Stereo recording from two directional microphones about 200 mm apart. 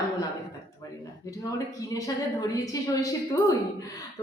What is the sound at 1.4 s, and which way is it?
A woman's voice, 15° left (ahead or behind).